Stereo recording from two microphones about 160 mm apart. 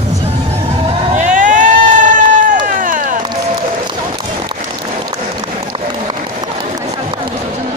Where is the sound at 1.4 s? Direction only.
55° right (ahead or behind).